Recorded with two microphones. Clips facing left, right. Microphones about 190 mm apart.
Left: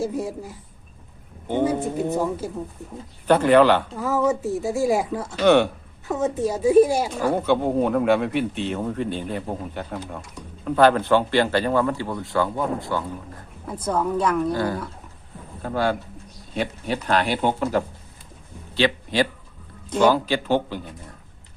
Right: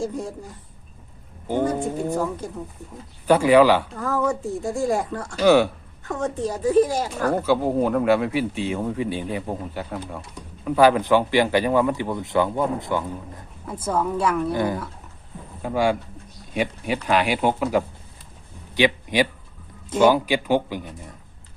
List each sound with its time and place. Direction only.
0.0 s speech: 5° left (ahead or behind)
2.1 s speech: 10° left (ahead or behind)
3.2 s speech: 10° right (ahead or behind)
3.9 s speech: 5° left (ahead or behind)
5.4 s speech: 5° right (ahead or behind)
6.1 s speech: 5° left (ahead or behind); by 13.1 s 15° right (ahead or behind)
14.2 s speech: 5° right (ahead or behind)
14.5 s a man's voice: 20° right (ahead or behind)